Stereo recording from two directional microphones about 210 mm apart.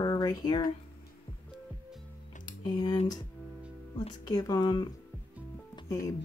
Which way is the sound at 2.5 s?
25° left (ahead or behind).